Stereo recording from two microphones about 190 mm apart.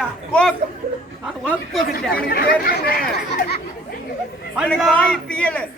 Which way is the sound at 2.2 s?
50° left (ahead or behind).